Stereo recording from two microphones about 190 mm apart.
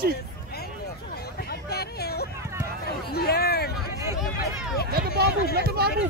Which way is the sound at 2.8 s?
55° left (ahead or behind).